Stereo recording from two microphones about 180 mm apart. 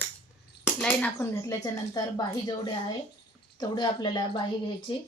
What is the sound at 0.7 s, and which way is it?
Speech, 5° left (ahead or behind).